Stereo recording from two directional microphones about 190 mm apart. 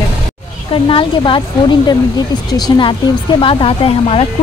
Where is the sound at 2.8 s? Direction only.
25° left (ahead or behind).